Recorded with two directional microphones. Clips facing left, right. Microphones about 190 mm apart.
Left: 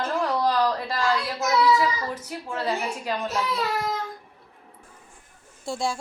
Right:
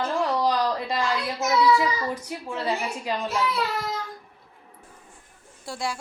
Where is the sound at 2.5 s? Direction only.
10° right (ahead or behind).